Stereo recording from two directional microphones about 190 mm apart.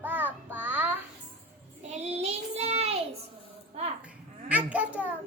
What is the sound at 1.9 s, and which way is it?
Child singing, 35° right (ahead or behind).